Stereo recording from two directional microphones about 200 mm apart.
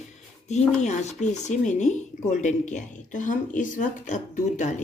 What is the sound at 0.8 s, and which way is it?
Speech, 35° left (ahead or behind).